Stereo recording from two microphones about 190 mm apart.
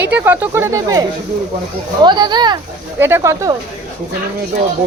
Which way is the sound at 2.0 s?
20° right (ahead or behind).